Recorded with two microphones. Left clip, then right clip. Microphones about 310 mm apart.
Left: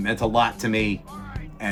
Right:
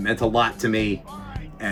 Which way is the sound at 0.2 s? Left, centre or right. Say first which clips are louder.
Left 1 dB; left.